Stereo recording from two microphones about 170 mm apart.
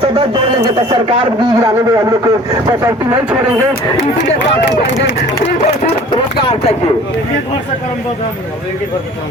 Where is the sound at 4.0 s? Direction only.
90° left.